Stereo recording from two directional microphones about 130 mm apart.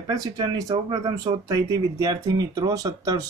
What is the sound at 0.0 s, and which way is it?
Speech, 30° right (ahead or behind).